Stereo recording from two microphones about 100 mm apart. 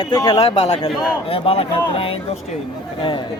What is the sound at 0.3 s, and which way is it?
Speech, 90° left.